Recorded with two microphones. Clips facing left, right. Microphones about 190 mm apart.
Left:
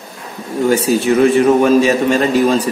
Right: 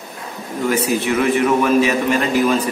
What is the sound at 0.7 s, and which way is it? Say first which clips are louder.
A man's voice: left 5 dB; 30° left (ahead or behind).